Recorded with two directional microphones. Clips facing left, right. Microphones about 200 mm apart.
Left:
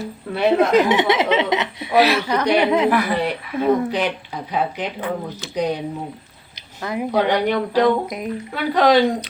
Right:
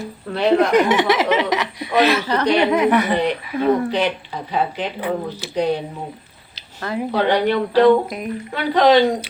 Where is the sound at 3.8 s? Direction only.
10° left (ahead or behind).